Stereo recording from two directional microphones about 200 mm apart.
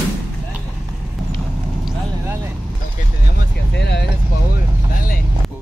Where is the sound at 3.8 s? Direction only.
55° left (ahead or behind).